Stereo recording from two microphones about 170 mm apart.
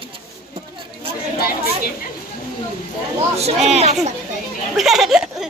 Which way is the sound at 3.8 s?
40° right (ahead or behind).